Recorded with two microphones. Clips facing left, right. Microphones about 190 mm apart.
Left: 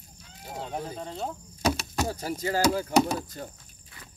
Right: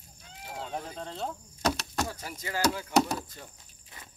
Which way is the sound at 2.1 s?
35° left (ahead or behind).